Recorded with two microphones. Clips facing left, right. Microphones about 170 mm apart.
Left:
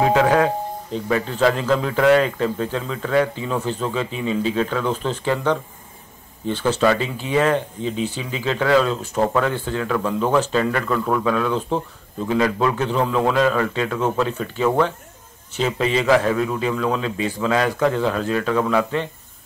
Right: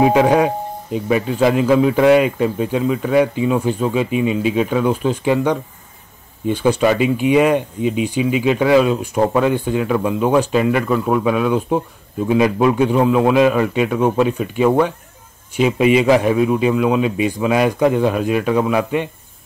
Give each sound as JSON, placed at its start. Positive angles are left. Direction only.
{"t": 0.0, "sound": "speech", "side_deg": -15}